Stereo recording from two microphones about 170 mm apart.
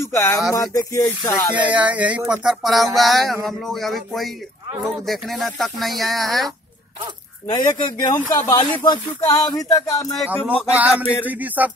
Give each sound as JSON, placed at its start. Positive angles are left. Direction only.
{"t": 0.0, "sound": "speech", "side_deg": 15}
{"t": 1.5, "sound": "music", "side_deg": -10}
{"t": 3.0, "sound": "speech", "side_deg": 0}
{"t": 7.4, "sound": "speech", "side_deg": 25}
{"t": 10.7, "sound": "music", "side_deg": -10}